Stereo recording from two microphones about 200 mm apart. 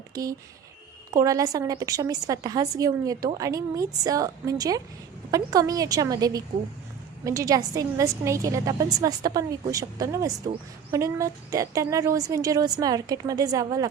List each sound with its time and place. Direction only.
0.1 s a woman's voice: 15° right (ahead or behind)